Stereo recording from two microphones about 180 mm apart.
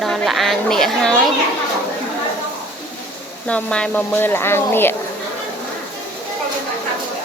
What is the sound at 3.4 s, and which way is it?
Speech, 5° left (ahead or behind).